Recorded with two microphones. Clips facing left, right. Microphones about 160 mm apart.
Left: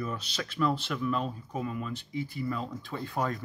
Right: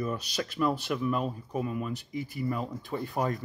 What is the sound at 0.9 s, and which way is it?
Speech, 10° right (ahead or behind).